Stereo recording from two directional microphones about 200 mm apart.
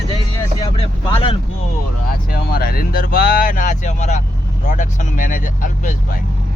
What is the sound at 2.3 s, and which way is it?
Speech, 50° left (ahead or behind).